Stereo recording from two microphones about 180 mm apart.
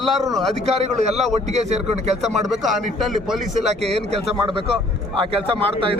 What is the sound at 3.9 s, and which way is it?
Speech, 35° right (ahead or behind).